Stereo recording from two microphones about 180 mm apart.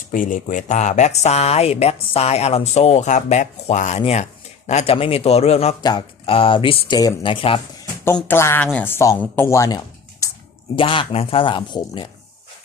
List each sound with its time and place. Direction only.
0.1 s speech: 45° left (ahead or behind); by 7.6 s 30° left (ahead or behind)
8.0 s speech: 10° left (ahead or behind)